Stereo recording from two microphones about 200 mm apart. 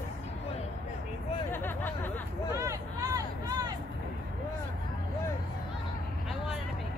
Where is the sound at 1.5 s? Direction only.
10° left (ahead or behind).